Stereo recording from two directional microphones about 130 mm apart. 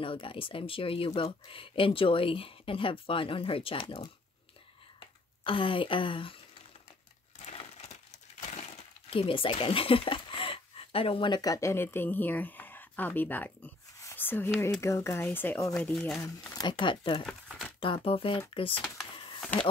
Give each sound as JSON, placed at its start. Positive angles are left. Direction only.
{"t": 0.0, "sound": "speech", "side_deg": 40}
{"t": 5.4, "sound": "speech", "side_deg": 40}
{"t": 7.5, "sound": "a sound", "side_deg": 55}
{"t": 9.1, "sound": "speech", "side_deg": 45}
{"t": 14.0, "sound": "a sound", "side_deg": 15}
{"t": 14.8, "sound": "speech", "side_deg": 20}
{"t": 16.2, "sound": "speech", "side_deg": 20}
{"t": 16.6, "sound": "speech", "side_deg": 40}
{"t": 17.3, "sound": "crumpling", "side_deg": 5}
{"t": 17.7, "sound": "speech", "side_deg": 45}